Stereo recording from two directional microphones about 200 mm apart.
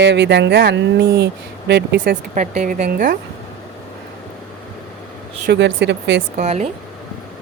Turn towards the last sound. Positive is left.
turn(degrees=-35)  # may be behind; listen again after turning